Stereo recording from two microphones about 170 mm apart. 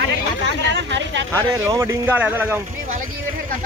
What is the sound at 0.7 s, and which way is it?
Speech, 90° right.